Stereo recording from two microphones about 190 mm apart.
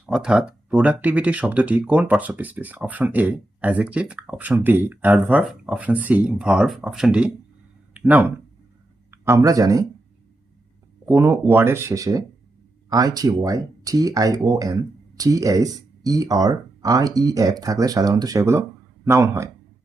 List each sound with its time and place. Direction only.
0.0 s speech: 5° right (ahead or behind)
11.0 s speech: 15° right (ahead or behind)